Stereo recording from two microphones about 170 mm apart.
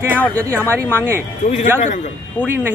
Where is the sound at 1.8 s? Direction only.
45° left (ahead or behind).